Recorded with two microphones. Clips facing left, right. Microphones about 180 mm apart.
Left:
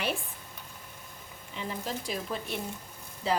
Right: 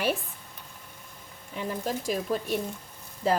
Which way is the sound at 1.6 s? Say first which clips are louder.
Right 5 dB; 45° right (ahead or behind).